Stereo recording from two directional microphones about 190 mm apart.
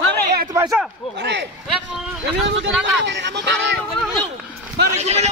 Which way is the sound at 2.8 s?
65° right (ahead or behind).